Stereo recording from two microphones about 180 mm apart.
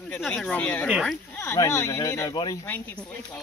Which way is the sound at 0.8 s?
5° right (ahead or behind).